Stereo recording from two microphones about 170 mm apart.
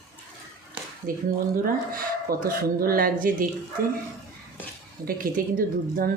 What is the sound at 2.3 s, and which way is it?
Speech, 60° right (ahead or behind).